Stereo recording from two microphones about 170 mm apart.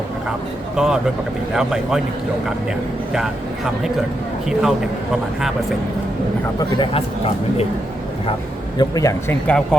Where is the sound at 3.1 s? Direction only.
5° right (ahead or behind).